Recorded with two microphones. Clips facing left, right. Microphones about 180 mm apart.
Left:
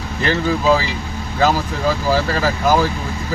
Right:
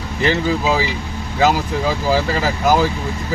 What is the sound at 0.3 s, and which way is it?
Speech, 15° right (ahead or behind).